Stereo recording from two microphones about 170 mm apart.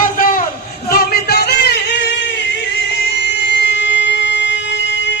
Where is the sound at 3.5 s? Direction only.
90° left.